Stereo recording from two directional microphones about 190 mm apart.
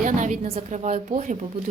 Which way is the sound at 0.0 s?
40° right (ahead or behind).